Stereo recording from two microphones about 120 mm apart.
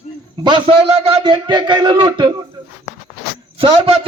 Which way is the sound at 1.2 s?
40° right (ahead or behind).